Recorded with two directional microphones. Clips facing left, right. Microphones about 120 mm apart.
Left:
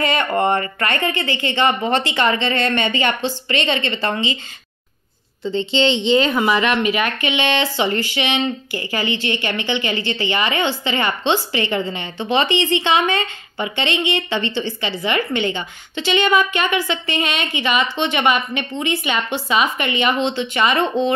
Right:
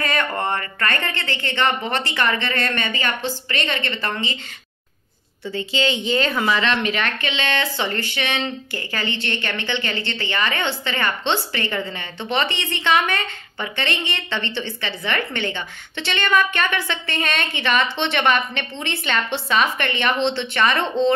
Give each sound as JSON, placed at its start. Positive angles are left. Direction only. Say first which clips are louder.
{"t": 0.0, "sound": "a woman's voice", "louder": "left 5 dB", "side_deg": 20}
{"t": 5.4, "sound": "a woman's voice", "louder": "left 5 dB", "side_deg": 25}